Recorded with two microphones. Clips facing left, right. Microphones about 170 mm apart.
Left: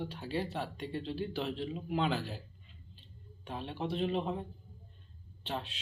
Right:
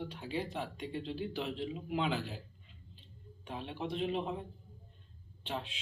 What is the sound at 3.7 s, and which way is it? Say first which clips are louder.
Speech: left 2 dB; 10° right (ahead or behind).